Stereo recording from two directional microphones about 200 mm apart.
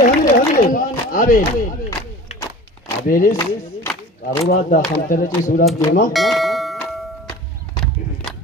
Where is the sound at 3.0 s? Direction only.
45° left (ahead or behind).